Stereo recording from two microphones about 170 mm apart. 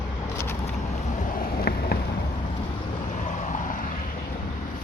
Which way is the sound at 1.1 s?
50° left (ahead or behind).